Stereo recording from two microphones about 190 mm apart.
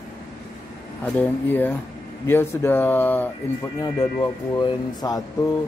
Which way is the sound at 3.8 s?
20° left (ahead or behind).